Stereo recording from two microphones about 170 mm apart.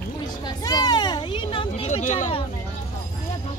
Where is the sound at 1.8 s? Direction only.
45° left (ahead or behind).